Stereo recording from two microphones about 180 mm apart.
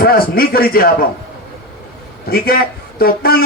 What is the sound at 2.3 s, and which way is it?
A man's voice, 55° left (ahead or behind).